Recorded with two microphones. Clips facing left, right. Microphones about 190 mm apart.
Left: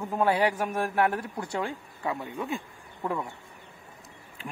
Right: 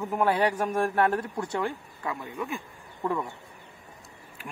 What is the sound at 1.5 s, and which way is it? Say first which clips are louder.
A man's voice: even; 20° left (ahead or behind).